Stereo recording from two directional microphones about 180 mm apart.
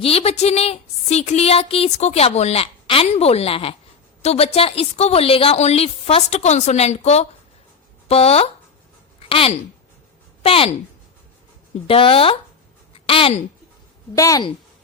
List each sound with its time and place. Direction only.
0.0 s speech: 35° left (ahead or behind)
11.9 s speech: 30° left (ahead or behind)
12.9 s a sound: 30° left (ahead or behind)
14.2 s a woman's voice: 20° left (ahead or behind)